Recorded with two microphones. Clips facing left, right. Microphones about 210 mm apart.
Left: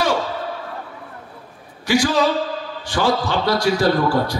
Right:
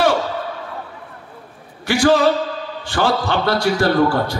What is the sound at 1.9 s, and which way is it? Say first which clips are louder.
A man's voice: right 3 dB; 55° right (ahead or behind).